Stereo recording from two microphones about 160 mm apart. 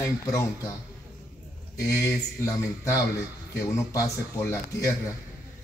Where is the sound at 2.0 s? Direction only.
20° left (ahead or behind).